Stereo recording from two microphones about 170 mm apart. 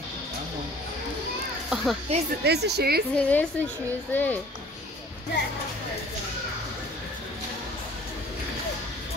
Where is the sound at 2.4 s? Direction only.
75° right (ahead or behind).